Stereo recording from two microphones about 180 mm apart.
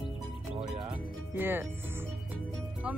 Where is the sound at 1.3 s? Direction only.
10° right (ahead or behind).